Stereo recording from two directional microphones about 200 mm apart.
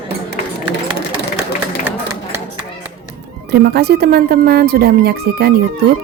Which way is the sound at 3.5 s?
55° right (ahead or behind).